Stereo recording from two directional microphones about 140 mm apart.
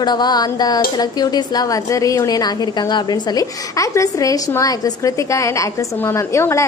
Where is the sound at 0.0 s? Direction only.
30° left (ahead or behind).